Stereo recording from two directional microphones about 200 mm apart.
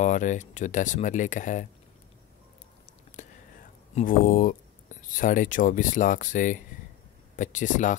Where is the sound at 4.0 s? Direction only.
45° left (ahead or behind).